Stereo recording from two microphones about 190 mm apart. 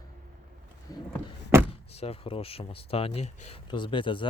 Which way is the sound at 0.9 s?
20° left (ahead or behind).